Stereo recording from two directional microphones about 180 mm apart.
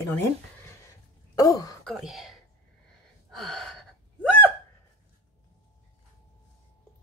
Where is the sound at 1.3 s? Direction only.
20° left (ahead or behind).